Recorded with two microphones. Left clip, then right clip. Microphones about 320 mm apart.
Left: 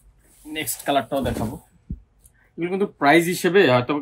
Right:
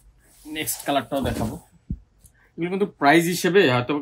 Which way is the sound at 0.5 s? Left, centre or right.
Centre.